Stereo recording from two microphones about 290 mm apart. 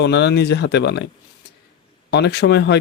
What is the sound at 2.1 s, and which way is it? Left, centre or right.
Speech, left.